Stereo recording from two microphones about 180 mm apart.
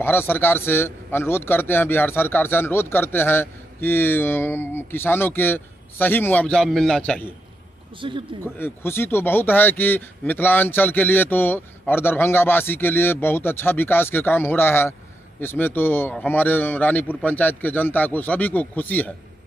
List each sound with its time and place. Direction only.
0.0 s a man's voice: 10° left (ahead or behind)
8.0 s speech: 30° right (ahead or behind)
8.5 s a man's voice: 10° left (ahead or behind)